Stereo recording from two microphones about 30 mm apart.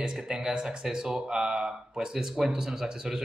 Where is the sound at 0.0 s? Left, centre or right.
Right.